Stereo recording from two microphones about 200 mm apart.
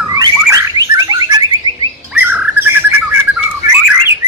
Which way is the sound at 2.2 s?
10° right (ahead or behind).